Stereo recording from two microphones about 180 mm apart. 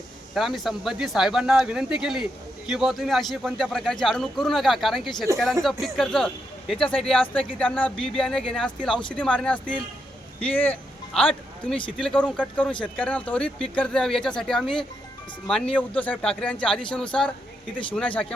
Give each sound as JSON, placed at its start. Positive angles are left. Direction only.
{"t": 0.3, "sound": "a man's voice", "side_deg": 0}